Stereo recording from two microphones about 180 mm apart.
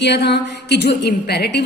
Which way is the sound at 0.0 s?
70° left (ahead or behind).